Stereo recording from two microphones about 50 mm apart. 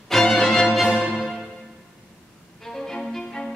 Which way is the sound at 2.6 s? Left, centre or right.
Centre.